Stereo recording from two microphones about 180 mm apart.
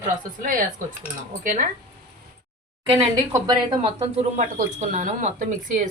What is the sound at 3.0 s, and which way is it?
A woman's voice, 25° right (ahead or behind).